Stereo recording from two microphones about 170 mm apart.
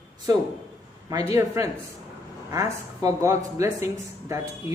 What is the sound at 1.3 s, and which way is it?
Speech, 15° right (ahead or behind).